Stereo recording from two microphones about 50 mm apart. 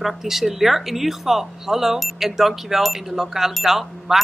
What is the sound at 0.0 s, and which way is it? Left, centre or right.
Speech, centre.